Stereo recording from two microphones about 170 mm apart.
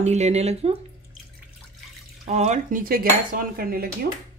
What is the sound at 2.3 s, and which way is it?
Cutlery, 40° right (ahead or behind).